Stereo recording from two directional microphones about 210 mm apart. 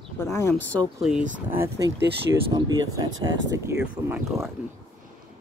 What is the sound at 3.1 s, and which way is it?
Speech, 65° right (ahead or behind).